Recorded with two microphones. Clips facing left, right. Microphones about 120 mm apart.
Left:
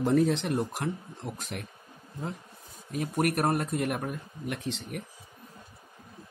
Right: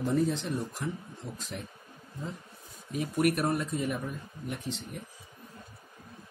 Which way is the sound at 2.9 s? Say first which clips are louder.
Even; 45° left (ahead or behind).